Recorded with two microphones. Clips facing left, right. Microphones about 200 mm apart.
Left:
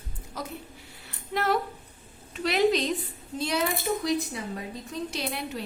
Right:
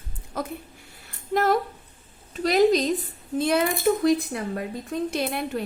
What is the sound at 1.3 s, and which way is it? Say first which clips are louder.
A woman's voice: right 5 dB; 45° right (ahead or behind).